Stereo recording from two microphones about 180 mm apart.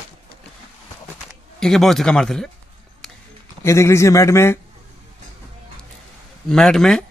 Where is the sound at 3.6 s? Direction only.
15° left (ahead or behind).